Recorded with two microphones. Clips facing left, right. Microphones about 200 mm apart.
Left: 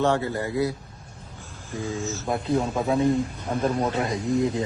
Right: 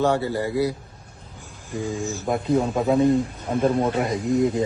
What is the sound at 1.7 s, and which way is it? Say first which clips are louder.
Speech: right 2 dB; 15° right (ahead or behind).